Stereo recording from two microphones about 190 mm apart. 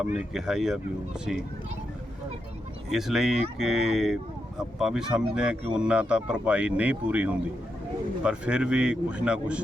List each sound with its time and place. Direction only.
0.0 s speech: 5° right (ahead or behind)
2.9 s speech: centre (ahead or behind)